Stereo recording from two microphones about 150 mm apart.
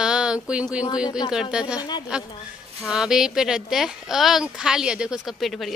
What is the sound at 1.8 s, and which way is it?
Speech, 30° left (ahead or behind).